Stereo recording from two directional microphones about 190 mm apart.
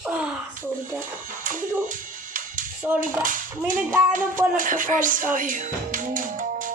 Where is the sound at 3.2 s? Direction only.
45° right (ahead or behind).